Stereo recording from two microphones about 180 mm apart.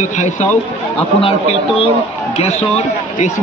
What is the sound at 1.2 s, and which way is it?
Speech, 30° left (ahead or behind).